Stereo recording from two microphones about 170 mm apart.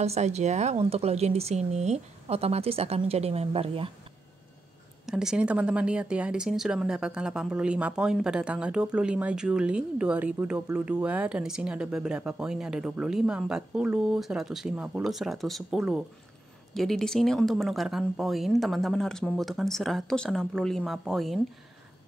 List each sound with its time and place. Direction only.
0.0 s speech: 40° right (ahead or behind)
5.0 s speech: 5° right (ahead or behind)